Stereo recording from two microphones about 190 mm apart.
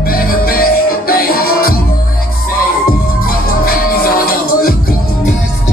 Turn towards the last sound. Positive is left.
turn(degrees=50)  # may be behind; listen again after turning